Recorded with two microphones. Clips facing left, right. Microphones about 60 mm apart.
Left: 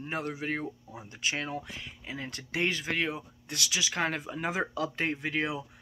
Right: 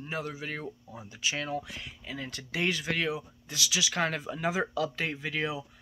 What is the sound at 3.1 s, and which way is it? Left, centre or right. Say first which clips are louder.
Speech: right 2 dB; left.